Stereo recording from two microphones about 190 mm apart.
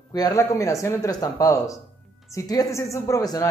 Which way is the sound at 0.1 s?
20° left (ahead or behind).